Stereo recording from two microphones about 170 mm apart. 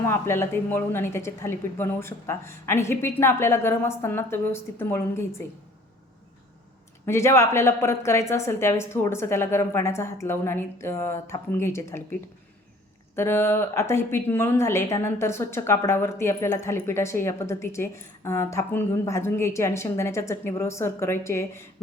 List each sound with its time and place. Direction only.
0.0 s a woman's voice: 15° left (ahead or behind)
7.0 s a woman's voice: 15° left (ahead or behind)
13.1 s a woman's voice: 15° left (ahead or behind)